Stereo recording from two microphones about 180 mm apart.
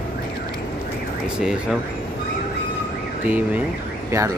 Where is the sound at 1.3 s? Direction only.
5° right (ahead or behind).